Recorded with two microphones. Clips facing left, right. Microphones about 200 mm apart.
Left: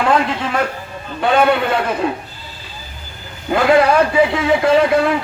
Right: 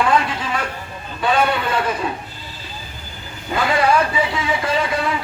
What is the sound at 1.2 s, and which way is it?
Speech, 60° left (ahead or behind).